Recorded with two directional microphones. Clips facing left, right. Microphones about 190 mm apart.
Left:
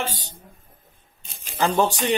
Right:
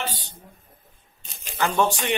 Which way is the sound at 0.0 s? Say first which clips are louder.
Left 2 dB; 45° left (ahead or behind).